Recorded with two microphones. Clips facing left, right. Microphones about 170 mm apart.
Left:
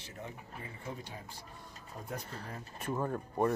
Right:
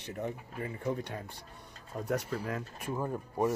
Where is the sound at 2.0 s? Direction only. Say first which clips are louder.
Right 10 dB; 80° right.